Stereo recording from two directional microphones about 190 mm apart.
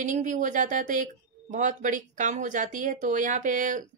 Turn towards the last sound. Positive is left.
turn(degrees=-40)  # may be behind; listen again after turning